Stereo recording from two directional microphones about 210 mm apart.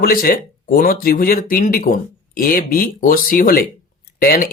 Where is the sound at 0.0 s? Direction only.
45° left (ahead or behind).